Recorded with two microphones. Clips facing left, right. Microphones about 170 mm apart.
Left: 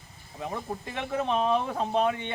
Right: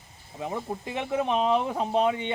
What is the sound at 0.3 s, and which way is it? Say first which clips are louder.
Speech: right 2 dB; 20° right (ahead or behind).